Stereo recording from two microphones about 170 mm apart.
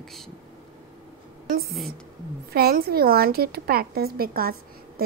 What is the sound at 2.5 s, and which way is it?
Speech, 60° right (ahead or behind).